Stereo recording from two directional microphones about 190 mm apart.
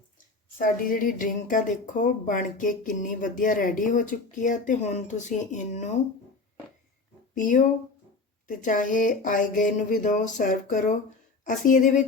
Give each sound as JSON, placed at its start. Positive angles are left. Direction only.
{"t": 0.6, "sound": "speech", "side_deg": 45}
{"t": 7.3, "sound": "speech", "side_deg": 45}